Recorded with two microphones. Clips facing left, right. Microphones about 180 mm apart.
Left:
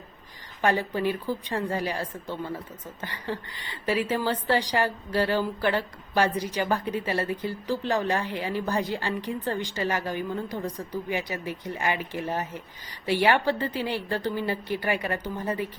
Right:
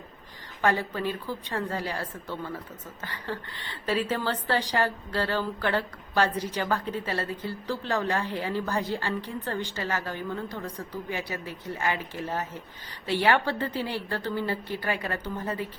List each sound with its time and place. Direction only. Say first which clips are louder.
0.6 s a woman's voice: left 2 dB; 15° left (ahead or behind)